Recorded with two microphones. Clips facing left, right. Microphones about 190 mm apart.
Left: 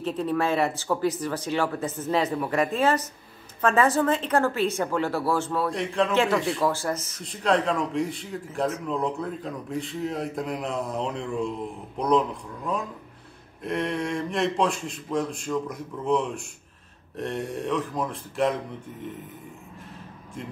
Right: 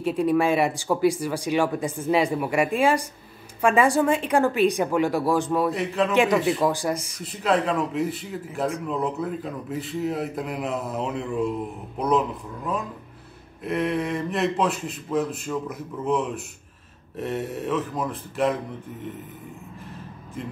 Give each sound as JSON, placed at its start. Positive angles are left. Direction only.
{"t": 0.0, "sound": "speech", "side_deg": -10}
{"t": 5.7, "sound": "speech", "side_deg": -5}
{"t": 6.1, "sound": "speech", "side_deg": -15}